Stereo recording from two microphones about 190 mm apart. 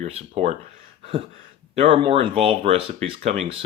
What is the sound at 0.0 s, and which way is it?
Speech, 35° right (ahead or behind).